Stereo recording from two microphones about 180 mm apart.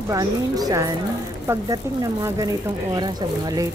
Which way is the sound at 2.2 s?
20° right (ahead or behind).